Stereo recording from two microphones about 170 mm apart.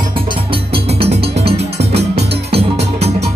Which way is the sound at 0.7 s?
35° right (ahead or behind).